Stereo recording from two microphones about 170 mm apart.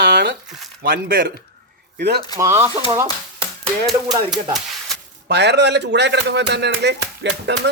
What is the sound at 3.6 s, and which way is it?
Speech, centre (ahead or behind).